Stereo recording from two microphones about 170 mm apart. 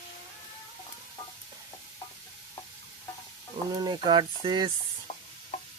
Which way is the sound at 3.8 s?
25° right (ahead or behind).